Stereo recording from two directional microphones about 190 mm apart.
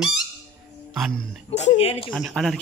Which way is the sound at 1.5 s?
35° left (ahead or behind).